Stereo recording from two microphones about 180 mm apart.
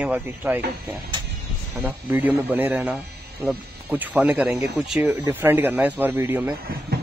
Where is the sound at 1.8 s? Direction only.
10° right (ahead or behind).